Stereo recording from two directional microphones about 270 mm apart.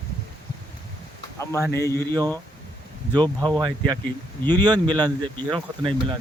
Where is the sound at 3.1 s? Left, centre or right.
Centre.